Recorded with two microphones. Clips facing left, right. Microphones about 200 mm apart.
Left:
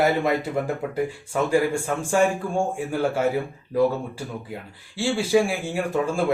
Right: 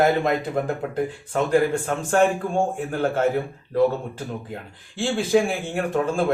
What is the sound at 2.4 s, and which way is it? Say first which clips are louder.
Speech: right 1 dB; 20° right (ahead or behind).